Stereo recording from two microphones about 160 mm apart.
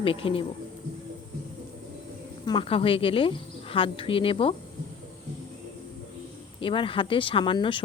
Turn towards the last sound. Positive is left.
turn(degrees=30)  # may be behind; listen again after turning